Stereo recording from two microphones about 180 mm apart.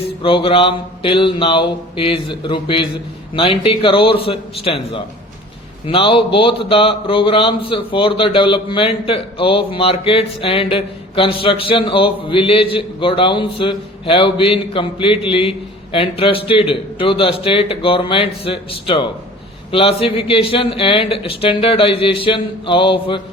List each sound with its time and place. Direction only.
0.2 s speech: 30° left (ahead or behind)